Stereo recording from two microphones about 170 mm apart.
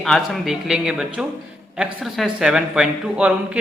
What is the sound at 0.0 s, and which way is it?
A man's voice, centre (ahead or behind).